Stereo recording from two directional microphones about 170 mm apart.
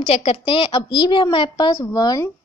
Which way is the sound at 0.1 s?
35° left (ahead or behind).